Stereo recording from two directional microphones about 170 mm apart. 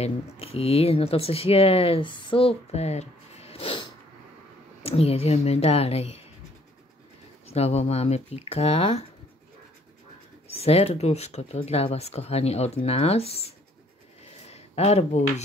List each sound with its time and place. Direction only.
0.0 s speech: 35° left (ahead or behind)
4.8 s speech: 35° left (ahead or behind)
7.4 s speech: 40° left (ahead or behind)
10.5 s speech: 35° left (ahead or behind)